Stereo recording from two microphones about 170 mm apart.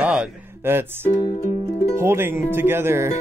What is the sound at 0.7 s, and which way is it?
Speech, 15° right (ahead or behind).